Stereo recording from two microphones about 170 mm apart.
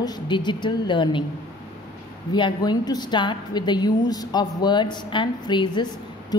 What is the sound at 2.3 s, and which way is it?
A woman's voice, 25° left (ahead or behind).